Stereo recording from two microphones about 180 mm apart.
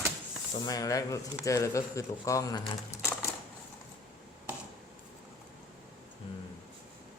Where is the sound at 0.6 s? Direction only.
20° left (ahead or behind).